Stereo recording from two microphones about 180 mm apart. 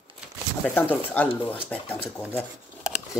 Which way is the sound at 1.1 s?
10° left (ahead or behind).